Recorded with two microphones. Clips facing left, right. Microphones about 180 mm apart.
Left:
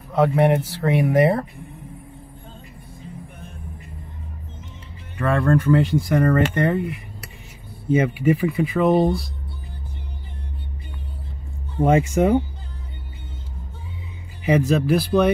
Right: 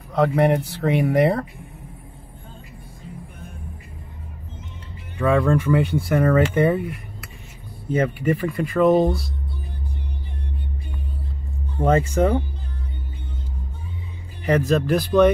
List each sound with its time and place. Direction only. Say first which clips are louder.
0.1 s speech: left 1 dB; centre (ahead or behind)
5.2 s speech: even; centre (ahead or behind)
7.9 s speech: left 3 dB; 5° left (ahead or behind)
11.8 s speech: left 1 dB; 10° left (ahead or behind)
14.7 s speech: left 1 dB; 5° left (ahead or behind)